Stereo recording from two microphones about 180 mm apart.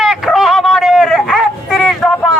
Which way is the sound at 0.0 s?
Centre (ahead or behind).